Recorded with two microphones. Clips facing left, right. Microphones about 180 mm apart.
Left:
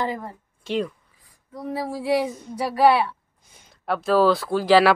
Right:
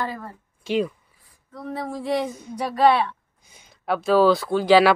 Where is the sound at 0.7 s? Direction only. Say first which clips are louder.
Right 2 dB; 5° right (ahead or behind).